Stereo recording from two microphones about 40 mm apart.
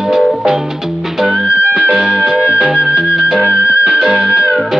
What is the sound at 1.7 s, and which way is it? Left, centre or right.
Music, right.